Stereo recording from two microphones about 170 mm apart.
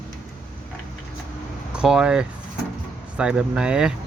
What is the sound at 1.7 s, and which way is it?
Speech, 5° right (ahead or behind).